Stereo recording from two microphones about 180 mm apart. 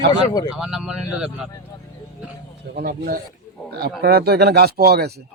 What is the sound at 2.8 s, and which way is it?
Speech, 60° right (ahead or behind).